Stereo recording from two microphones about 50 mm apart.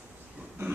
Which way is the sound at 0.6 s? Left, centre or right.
Right.